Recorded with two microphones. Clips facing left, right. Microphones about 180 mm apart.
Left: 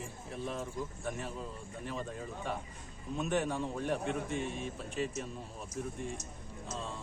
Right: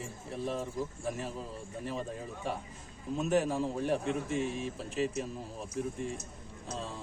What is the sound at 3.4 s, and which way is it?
Speech, 30° right (ahead or behind).